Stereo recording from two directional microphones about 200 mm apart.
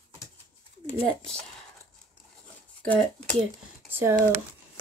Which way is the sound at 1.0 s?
5° left (ahead or behind).